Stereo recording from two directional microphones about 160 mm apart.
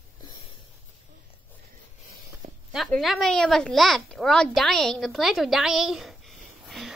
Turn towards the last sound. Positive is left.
turn(degrees=0)  # may be behind; listen again after turning